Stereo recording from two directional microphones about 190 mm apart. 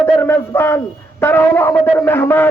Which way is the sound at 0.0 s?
10° left (ahead or behind).